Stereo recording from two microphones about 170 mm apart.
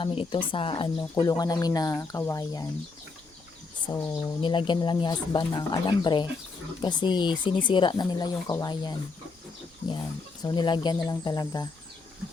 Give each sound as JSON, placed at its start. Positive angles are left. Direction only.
{"t": 0.0, "sound": "speech", "side_deg": 30}
{"t": 3.9, "sound": "speech", "side_deg": 15}
{"t": 4.4, "sound": "speech", "side_deg": 30}
{"t": 10.4, "sound": "speech", "side_deg": 25}